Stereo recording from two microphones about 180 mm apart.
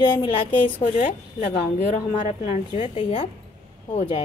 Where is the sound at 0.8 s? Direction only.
40° left (ahead or behind).